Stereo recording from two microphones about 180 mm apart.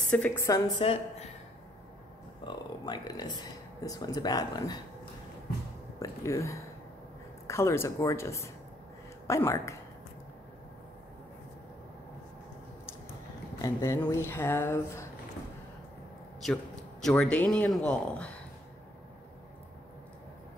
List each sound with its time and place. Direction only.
0.1 s speech: 10° left (ahead or behind)
0.8 s a woman's voice: 35° left (ahead or behind)
2.4 s speech: 25° left (ahead or behind)
5.9 s speech: 15° left (ahead or behind)
13.6 s speech: 15° left (ahead or behind)
17.0 s speech: 5° left (ahead or behind)